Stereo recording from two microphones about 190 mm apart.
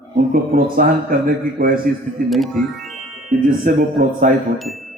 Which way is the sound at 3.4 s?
45° right (ahead or behind).